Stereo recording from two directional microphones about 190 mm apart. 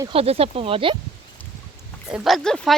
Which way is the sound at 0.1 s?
30° right (ahead or behind).